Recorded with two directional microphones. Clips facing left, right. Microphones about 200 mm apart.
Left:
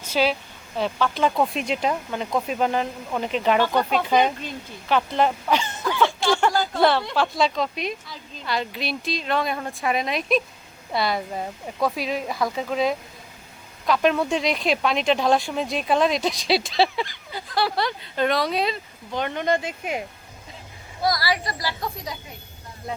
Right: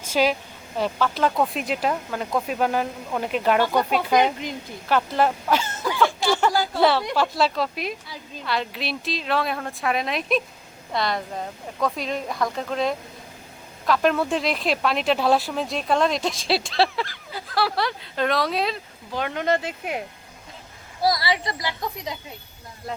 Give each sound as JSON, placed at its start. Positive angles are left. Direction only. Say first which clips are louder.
{"t": 0.0, "sound": "speech", "louder": "right 1 dB", "side_deg": -10}
{"t": 6.0, "sound": "a sound", "louder": "even", "side_deg": 0}
{"t": 7.0, "sound": "speech", "louder": "even", "side_deg": -15}
{"t": 21.0, "sound": "speech", "louder": "right 1 dB", "side_deg": -25}